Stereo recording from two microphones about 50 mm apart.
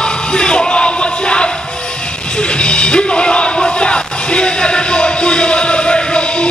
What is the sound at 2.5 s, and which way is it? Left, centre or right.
Music, centre.